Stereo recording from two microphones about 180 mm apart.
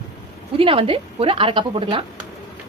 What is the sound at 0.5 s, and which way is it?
A woman's voice, 30° right (ahead or behind).